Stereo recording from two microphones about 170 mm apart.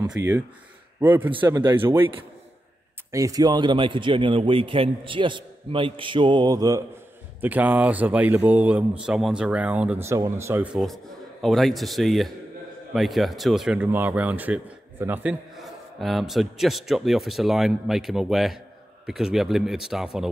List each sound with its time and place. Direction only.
0.2 s speech: 85° right
1.0 s a man's voice: 10° right (ahead or behind)
3.1 s a man's voice: 20° right (ahead or behind)
7.4 s a man's voice: 10° right (ahead or behind)
11.4 s a man's voice: centre (ahead or behind)